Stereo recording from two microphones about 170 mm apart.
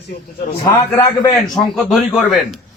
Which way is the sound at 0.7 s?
20° left (ahead or behind).